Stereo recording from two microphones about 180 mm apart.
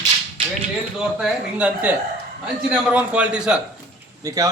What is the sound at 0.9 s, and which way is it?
A man's voice, 5° right (ahead or behind).